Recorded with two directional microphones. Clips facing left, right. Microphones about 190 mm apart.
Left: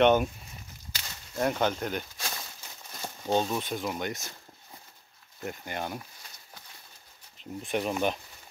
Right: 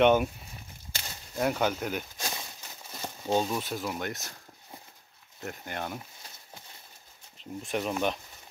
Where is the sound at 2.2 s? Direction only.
15° right (ahead or behind).